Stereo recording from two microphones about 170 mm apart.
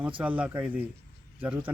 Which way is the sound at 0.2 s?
10° right (ahead or behind).